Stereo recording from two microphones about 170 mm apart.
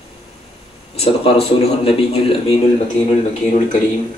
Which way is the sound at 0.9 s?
35° left (ahead or behind).